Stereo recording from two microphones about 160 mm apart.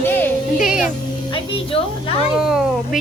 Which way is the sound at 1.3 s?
35° left (ahead or behind).